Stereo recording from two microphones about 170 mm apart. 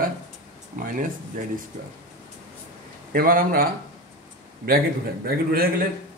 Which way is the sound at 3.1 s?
55° right (ahead or behind).